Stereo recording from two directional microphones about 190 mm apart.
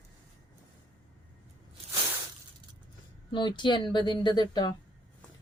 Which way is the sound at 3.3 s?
25° left (ahead or behind).